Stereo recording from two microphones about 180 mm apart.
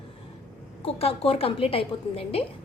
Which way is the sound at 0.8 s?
30° left (ahead or behind).